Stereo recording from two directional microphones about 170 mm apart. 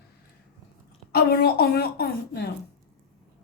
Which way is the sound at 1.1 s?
65° left (ahead or behind).